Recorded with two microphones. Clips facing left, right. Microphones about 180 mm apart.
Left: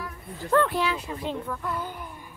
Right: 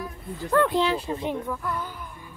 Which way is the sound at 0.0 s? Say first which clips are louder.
Right 3 dB; 15° right (ahead or behind).